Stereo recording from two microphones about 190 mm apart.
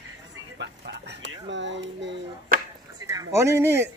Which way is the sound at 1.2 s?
70° right (ahead or behind).